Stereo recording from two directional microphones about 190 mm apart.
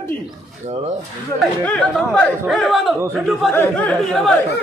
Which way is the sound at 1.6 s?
5° left (ahead or behind).